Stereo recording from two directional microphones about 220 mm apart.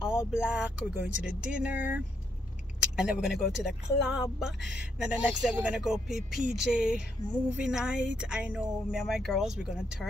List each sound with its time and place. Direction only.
0.3 s speech: 5° right (ahead or behind)